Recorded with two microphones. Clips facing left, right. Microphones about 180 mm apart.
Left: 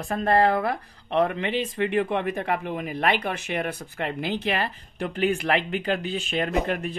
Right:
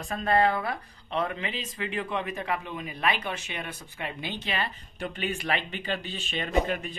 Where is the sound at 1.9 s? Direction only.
55° left (ahead or behind).